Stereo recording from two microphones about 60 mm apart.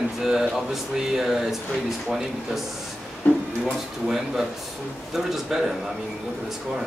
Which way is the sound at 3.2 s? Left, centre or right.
Left.